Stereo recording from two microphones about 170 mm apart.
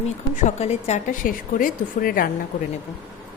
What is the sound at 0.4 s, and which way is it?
A woman's voice, 40° left (ahead or behind).